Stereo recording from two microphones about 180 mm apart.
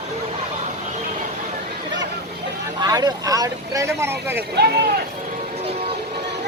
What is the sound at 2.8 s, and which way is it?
Speech, 20° right (ahead or behind).